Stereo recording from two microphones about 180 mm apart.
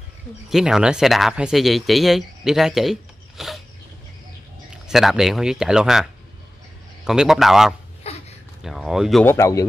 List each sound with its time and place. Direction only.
0.5 s speech: centre (ahead or behind)
4.8 s speech: centre (ahead or behind)
7.1 s speech: centre (ahead or behind)
8.0 s a sound: 35° left (ahead or behind)
8.6 s speech: centre (ahead or behind)
9.2 s speech: 15° left (ahead or behind)